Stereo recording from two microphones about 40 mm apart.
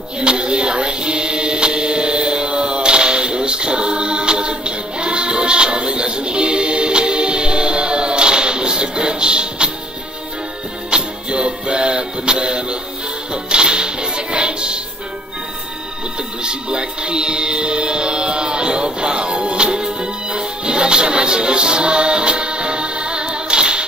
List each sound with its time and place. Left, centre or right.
0.2 s music: right
10.9 s music: right
16.4 s music: right